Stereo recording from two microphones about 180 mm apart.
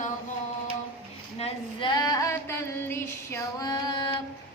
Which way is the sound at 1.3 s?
30° left (ahead or behind).